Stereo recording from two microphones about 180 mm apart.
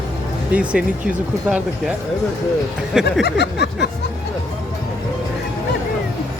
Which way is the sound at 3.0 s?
65° left (ahead or behind).